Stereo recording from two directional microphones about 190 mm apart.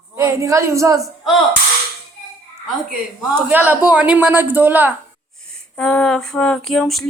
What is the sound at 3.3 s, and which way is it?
Speech, 10° right (ahead or behind).